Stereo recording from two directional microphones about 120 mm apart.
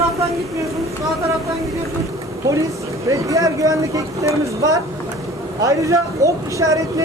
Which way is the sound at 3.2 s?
25° right (ahead or behind).